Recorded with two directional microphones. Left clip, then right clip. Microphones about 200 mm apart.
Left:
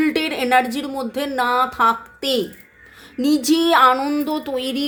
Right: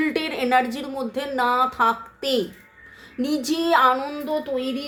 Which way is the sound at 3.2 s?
25° left (ahead or behind).